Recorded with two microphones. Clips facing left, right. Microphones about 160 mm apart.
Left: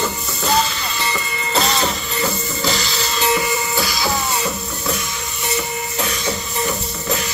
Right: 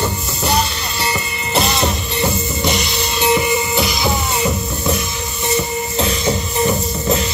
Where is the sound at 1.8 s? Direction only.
25° right (ahead or behind).